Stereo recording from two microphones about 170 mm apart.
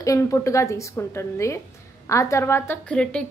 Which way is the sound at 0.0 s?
20° left (ahead or behind).